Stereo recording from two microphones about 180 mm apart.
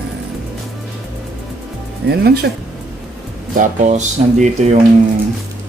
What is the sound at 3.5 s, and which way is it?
Speech, 40° right (ahead or behind).